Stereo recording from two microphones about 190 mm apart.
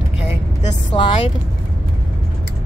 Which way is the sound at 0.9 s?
30° left (ahead or behind).